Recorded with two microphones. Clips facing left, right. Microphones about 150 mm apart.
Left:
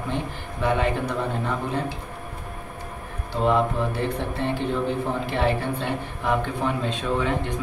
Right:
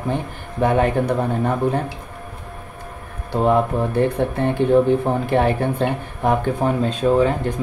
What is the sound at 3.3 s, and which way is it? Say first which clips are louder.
Speech: right 5 dB; 50° right (ahead or behind).